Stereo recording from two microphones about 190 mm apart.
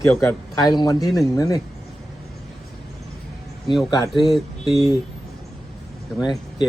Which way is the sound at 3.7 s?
Centre (ahead or behind).